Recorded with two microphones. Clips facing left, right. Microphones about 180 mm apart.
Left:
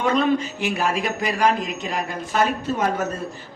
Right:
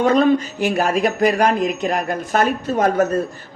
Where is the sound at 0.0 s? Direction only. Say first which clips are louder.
Right 5 dB; 40° right (ahead or behind).